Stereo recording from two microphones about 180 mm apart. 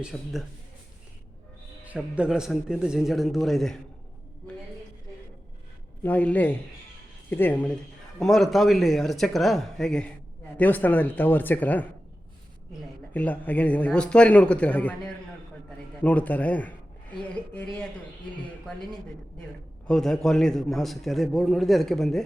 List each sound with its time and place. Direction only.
0.0 s a man's voice: centre (ahead or behind)
1.8 s a man's voice: 10° right (ahead or behind)
6.0 s a man's voice: 10° left (ahead or behind)
13.1 s a man's voice: 10° left (ahead or behind)
19.9 s a man's voice: centre (ahead or behind)